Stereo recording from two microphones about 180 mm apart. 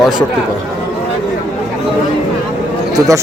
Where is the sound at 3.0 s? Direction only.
20° right (ahead or behind).